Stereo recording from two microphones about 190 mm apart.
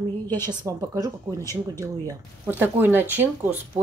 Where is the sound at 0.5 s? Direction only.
15° right (ahead or behind).